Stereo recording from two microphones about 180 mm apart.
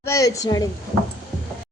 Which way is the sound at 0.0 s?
15° left (ahead or behind).